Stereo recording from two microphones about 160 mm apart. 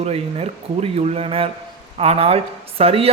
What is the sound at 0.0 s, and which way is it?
A man's voice, 40° right (ahead or behind).